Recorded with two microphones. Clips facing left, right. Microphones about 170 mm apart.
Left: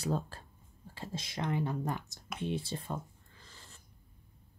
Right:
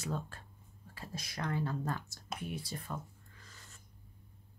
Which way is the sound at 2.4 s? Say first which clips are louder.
Left 8 dB; 25° left (ahead or behind).